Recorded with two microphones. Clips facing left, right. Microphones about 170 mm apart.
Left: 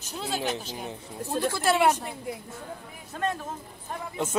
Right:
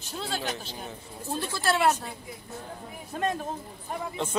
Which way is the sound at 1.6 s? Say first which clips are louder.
Left 1 dB; 15° left (ahead or behind).